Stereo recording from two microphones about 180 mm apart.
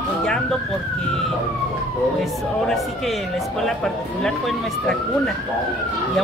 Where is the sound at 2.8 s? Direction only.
Centre (ahead or behind).